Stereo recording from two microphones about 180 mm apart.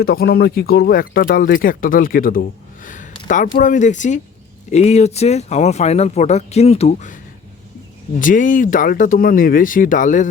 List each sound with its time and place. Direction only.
0.0 s a man's voice: 60° left (ahead or behind); by 7.1 s 35° left (ahead or behind)
8.2 s speech: 45° left (ahead or behind)